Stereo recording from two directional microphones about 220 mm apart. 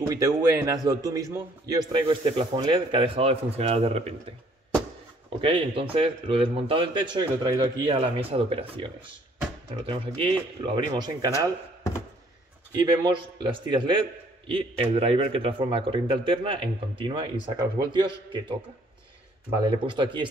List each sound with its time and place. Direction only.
0.1 s a man's voice: 15° right (ahead or behind); by 4.1 s 30° right (ahead or behind)
5.4 s a man's voice: 25° right (ahead or behind)
12.8 s a man's voice: 20° right (ahead or behind)
19.6 s a man's voice: 20° right (ahead or behind)